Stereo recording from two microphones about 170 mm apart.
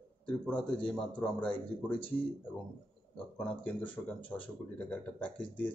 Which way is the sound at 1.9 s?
30° left (ahead or behind).